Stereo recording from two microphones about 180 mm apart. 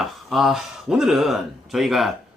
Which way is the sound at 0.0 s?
Centre (ahead or behind).